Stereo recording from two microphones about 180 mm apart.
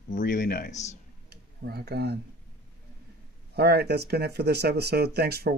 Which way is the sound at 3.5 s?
60° right (ahead or behind).